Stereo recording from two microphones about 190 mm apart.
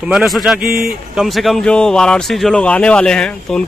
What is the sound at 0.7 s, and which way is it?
Speech, 50° right (ahead or behind).